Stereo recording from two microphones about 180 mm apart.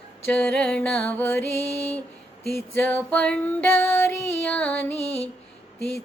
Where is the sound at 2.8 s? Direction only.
5° left (ahead or behind).